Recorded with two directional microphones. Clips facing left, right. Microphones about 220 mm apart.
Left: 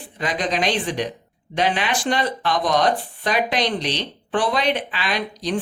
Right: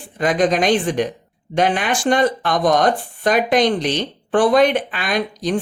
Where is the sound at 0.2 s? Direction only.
50° right (ahead or behind).